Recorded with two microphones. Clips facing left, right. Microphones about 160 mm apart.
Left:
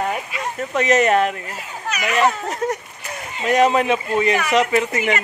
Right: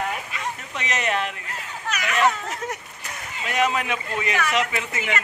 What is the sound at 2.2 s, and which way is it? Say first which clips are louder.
Speech: left 4 dB; 35° left (ahead or behind).